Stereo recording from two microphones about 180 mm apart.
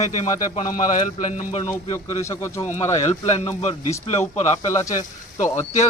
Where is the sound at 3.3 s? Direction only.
40° left (ahead or behind).